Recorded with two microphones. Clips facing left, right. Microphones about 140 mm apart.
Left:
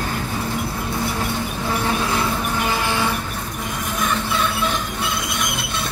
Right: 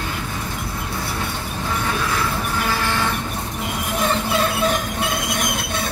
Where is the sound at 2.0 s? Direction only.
25° left (ahead or behind).